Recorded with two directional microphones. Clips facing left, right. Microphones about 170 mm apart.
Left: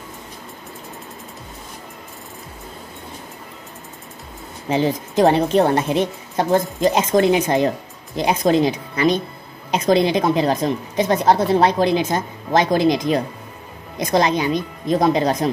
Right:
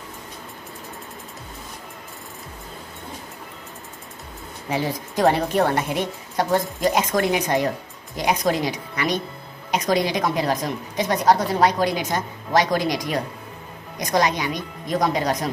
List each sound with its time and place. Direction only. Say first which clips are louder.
4.6 s a woman's voice: left 6 dB; 20° left (ahead or behind)